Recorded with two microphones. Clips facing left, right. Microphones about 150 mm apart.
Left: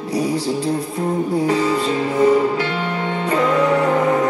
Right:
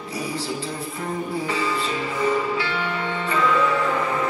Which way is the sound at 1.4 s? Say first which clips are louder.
Left 8 dB; 40° left (ahead or behind).